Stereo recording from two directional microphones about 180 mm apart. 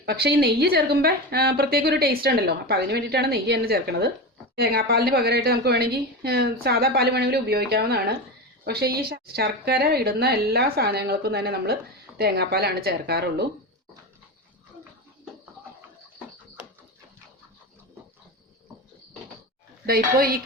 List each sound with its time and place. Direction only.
0.0 s a woman's voice: 60° right (ahead or behind)
19.8 s a woman's voice: 60° right (ahead or behind)